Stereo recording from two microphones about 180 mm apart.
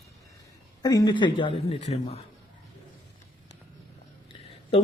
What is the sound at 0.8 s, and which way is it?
Speech, 20° left (ahead or behind).